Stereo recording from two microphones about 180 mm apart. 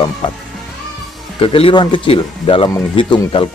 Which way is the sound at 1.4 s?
30° left (ahead or behind).